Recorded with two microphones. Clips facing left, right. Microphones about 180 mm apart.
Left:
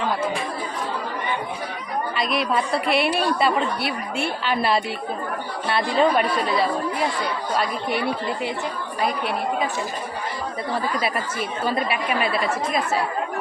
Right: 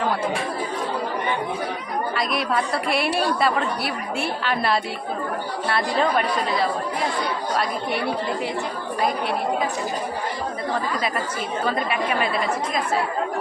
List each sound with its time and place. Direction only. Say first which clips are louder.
2.9 s a woman's voice: left 1 dB; centre (ahead or behind)
5.6 s speech: left 3 dB; 25° left (ahead or behind)